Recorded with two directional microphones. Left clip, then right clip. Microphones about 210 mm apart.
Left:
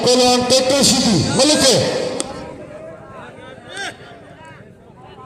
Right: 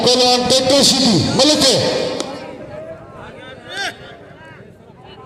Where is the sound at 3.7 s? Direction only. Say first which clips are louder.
Right 4 dB; 50° right (ahead or behind).